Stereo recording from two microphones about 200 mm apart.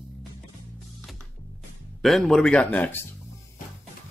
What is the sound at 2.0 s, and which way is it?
Speech, centre (ahead or behind).